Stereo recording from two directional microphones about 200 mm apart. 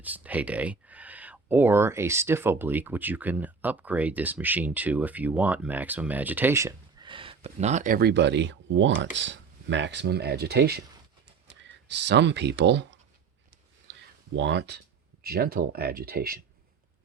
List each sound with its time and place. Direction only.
0.0 s speech: 10° right (ahead or behind)
7.1 s speech: 25° right (ahead or behind); by 10.8 s 55° right (ahead or behind)
11.9 s speech: 60° right (ahead or behind)
13.9 s a sound: 60° right (ahead or behind)
14.3 s speech: 60° right (ahead or behind)